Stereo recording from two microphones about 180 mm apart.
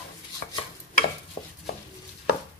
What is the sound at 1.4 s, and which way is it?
Stir, 15° left (ahead or behind).